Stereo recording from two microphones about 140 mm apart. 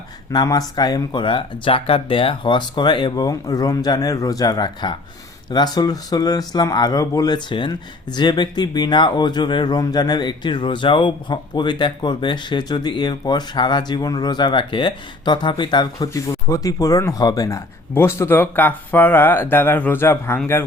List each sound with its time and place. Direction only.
0.3 s speech: 25° left (ahead or behind)